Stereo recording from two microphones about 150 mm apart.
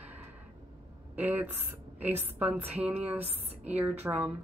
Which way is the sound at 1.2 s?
10° right (ahead or behind).